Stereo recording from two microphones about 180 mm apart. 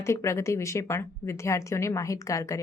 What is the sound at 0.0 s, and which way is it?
A woman's voice, 15° left (ahead or behind).